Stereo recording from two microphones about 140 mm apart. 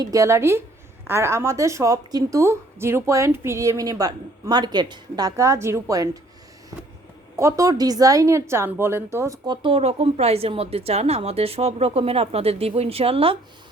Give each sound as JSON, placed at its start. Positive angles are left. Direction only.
{"t": 0.0, "sound": "a woman's voice", "side_deg": -25}
{"t": 7.3, "sound": "a woman's voice", "side_deg": -20}
{"t": 9.6, "sound": "a woman's voice", "side_deg": -45}